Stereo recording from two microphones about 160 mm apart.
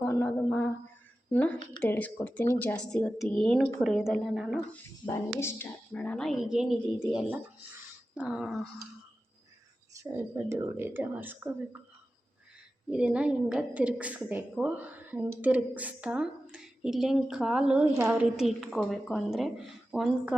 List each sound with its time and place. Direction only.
0.0 s a sound: 15° left (ahead or behind)
1.3 s a woman's voice: 10° left (ahead or behind)
5.0 s a woman's voice: 15° left (ahead or behind); by 8.6 s centre (ahead or behind)
9.9 s a woman's voice: 15° right (ahead or behind)
12.9 s a woman's voice: 5° right (ahead or behind)